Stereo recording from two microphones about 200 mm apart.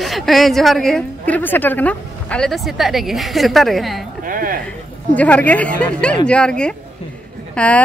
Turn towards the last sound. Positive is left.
turn(degrees=5)  # may be behind; listen again after turning